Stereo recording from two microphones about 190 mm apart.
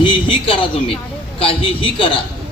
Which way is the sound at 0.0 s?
25° left (ahead or behind).